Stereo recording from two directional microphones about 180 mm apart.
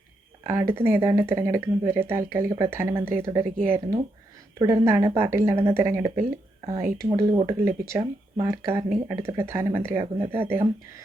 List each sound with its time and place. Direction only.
0.4 s speech: 15° right (ahead or behind)
4.6 s speech: 15° right (ahead or behind)